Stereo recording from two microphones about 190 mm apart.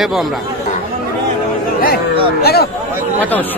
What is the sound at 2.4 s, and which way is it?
Speech, 55° left (ahead or behind).